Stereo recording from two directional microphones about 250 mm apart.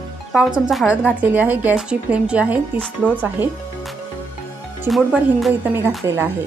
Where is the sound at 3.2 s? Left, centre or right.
Centre.